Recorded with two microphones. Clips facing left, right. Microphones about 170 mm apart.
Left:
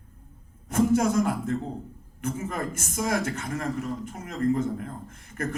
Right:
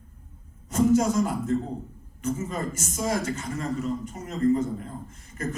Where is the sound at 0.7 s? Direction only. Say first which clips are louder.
Right 1 dB; 55° left (ahead or behind).